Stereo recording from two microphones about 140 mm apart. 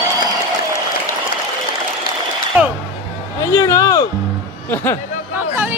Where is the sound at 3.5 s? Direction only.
25° left (ahead or behind).